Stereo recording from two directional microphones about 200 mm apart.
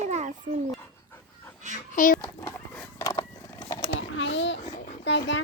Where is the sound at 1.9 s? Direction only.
40° left (ahead or behind).